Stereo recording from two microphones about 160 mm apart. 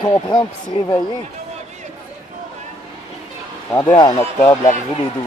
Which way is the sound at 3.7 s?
25° left (ahead or behind).